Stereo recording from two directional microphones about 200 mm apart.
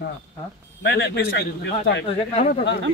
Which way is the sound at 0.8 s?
60° left (ahead or behind).